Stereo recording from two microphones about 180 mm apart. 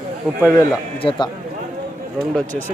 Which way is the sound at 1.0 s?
25° left (ahead or behind).